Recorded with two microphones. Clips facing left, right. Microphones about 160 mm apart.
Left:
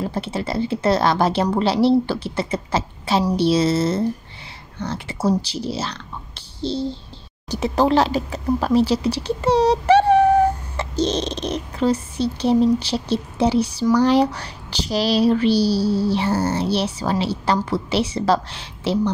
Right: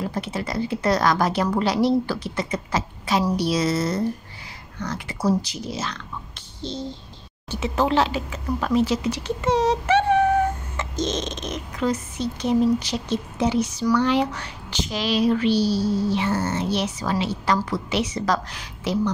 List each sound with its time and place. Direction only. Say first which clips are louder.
0.1 s a woman's voice: left 3 dB; 30° left (ahead or behind)